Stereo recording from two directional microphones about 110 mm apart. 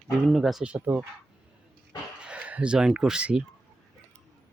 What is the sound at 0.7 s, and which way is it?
Speech, 15° right (ahead or behind).